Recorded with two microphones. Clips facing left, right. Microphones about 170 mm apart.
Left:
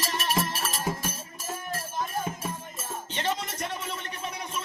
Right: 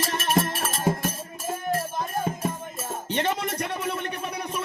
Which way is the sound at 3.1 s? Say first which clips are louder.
Right 4 dB; 60° right (ahead or behind).